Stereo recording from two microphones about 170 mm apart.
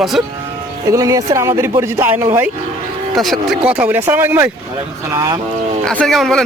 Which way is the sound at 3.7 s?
10° right (ahead or behind).